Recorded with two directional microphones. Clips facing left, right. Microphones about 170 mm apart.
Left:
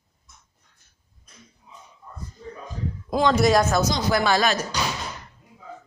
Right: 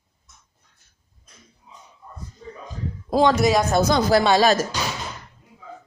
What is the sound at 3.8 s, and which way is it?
Speech, 60° right (ahead or behind).